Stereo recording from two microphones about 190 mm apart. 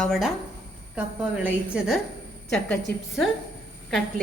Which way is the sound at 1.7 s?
5° right (ahead or behind).